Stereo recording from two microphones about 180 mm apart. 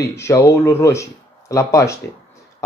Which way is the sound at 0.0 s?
15° left (ahead or behind).